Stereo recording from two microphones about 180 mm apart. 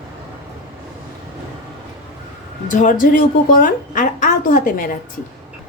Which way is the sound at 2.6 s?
45° left (ahead or behind).